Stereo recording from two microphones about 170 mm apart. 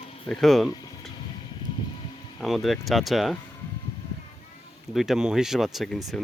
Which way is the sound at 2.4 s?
Centre (ahead or behind).